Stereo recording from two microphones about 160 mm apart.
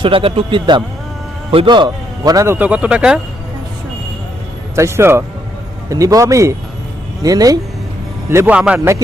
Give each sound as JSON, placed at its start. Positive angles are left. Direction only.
{"t": 0.0, "sound": "a man's voice", "side_deg": -35}
{"t": 4.7, "sound": "a man's voice", "side_deg": -15}